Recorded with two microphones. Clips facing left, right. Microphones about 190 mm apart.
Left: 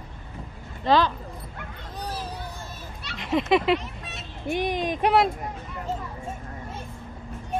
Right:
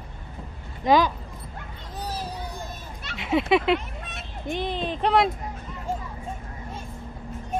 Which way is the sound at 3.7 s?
55° right (ahead or behind).